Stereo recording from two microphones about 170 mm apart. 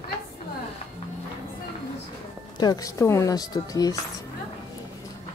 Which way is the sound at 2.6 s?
20° left (ahead or behind).